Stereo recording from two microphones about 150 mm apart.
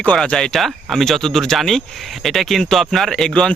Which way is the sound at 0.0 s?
10° left (ahead or behind).